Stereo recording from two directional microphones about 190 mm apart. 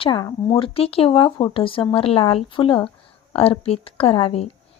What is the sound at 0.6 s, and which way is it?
Speech, 30° left (ahead or behind).